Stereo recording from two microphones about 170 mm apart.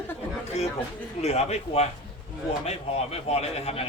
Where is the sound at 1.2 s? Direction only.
40° left (ahead or behind).